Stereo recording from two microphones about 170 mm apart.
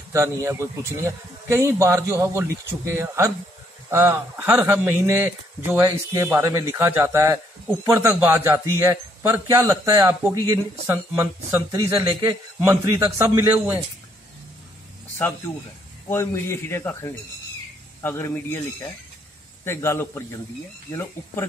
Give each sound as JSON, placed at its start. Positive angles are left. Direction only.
{"t": 0.1, "sound": "a man's voice", "side_deg": -15}
{"t": 16.1, "sound": "a man's voice", "side_deg": 15}